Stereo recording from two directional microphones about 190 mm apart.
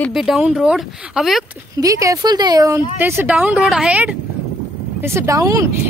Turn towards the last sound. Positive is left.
turn(degrees=-15)  # may be behind; listen again after turning